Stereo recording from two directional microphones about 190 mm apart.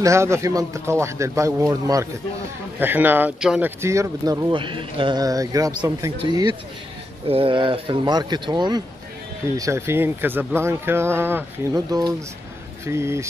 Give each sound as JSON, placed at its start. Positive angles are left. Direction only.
{"t": 0.0, "sound": "speech", "side_deg": -15}